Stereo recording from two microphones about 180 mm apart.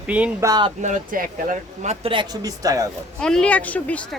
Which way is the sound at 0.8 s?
50° right (ahead or behind).